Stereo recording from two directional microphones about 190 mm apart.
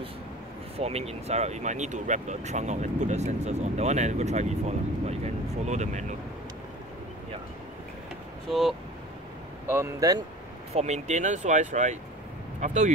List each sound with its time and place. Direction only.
0.7 s speech: 35° right (ahead or behind)
8.5 s speech: centre (ahead or behind)
9.7 s speech: 15° right (ahead or behind)
10.7 s speech: 35° right (ahead or behind)